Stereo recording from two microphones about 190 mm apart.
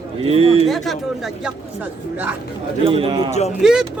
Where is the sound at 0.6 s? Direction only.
Centre (ahead or behind).